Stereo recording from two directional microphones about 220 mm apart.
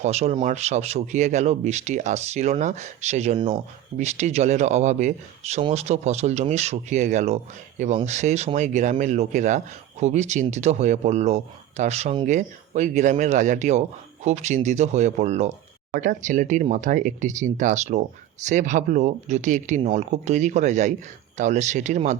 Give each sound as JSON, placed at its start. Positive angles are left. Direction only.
{"t": 0.0, "sound": "speech", "side_deg": -30}